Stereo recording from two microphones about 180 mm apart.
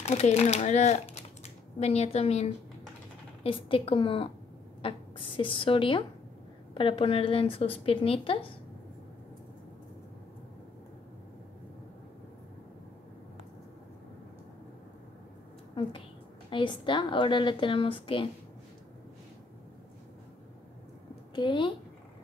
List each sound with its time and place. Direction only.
0.0 s speech: 35° left (ahead or behind)
3.4 s a woman's voice: 30° left (ahead or behind)
16.4 s a woman's voice: 25° left (ahead or behind)
21.4 s a woman's voice: 25° left (ahead or behind)